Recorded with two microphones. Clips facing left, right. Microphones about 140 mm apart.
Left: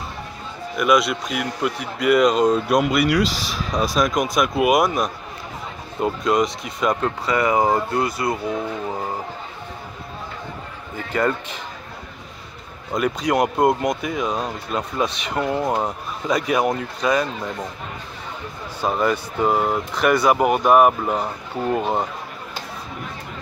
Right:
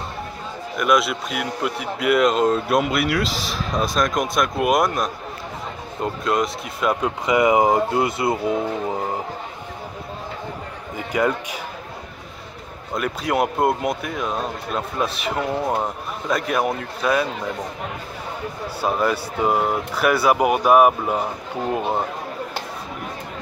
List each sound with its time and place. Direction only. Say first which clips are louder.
0.7 s a man's voice: left 1 dB; centre (ahead or behind); by 9.0 s 20° right (ahead or behind)
11.0 s speech: even; 10° right (ahead or behind)
12.9 s a man's voice: left 2 dB; centre (ahead or behind)
18.8 s a man's voice: left 1 dB; 5° right (ahead or behind)